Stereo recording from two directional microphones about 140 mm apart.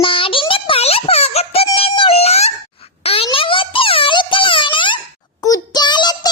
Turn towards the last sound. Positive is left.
turn(degrees=30)  # may be behind; listen again after turning